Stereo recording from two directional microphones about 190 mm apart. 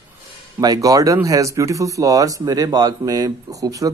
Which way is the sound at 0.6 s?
20° right (ahead or behind).